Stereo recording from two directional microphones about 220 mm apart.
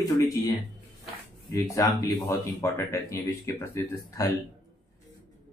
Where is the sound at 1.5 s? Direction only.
15° left (ahead or behind).